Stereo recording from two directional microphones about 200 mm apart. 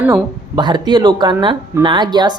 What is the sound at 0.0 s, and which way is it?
Speech, 20° right (ahead or behind).